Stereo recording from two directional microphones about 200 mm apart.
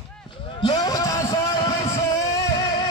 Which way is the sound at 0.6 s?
20° left (ahead or behind).